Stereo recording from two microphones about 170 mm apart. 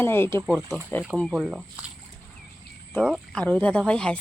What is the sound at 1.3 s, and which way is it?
Speech, 5° right (ahead or behind).